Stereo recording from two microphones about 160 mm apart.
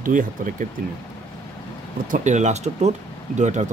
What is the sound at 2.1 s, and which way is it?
Speech, 50° right (ahead or behind).